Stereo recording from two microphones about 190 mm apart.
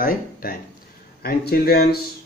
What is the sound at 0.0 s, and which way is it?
Speech, 50° left (ahead or behind).